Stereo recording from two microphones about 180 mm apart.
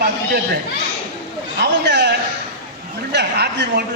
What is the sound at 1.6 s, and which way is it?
A man's voice, 75° right (ahead or behind).